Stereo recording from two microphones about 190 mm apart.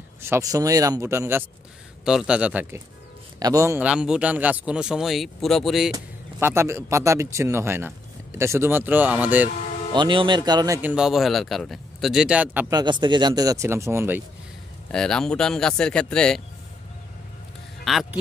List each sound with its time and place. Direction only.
0.2 s speech: 15° right (ahead or behind)
3.3 s speech: 20° right (ahead or behind); by 5.9 s centre (ahead or behind)
5.9 s speech: 15° right (ahead or behind)
9.9 s speech: 25° right (ahead or behind)
10.8 s speech: 5° right (ahead or behind)
12.7 s speech: 25° right (ahead or behind)
14.9 s speech: 5° left (ahead or behind)
17.8 s speech: centre (ahead or behind)